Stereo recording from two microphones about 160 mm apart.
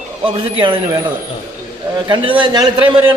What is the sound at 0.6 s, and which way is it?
Speech, 30° right (ahead or behind).